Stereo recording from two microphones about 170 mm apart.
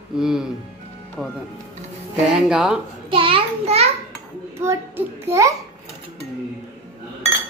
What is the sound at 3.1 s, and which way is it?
Speech, 30° right (ahead or behind).